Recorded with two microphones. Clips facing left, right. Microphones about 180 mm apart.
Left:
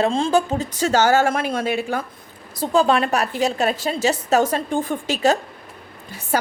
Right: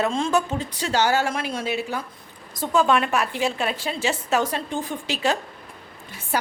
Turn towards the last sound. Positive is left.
turn(degrees=40)  # may be behind; listen again after turning